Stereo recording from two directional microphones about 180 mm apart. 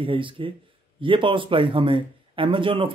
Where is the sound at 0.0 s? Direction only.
30° right (ahead or behind).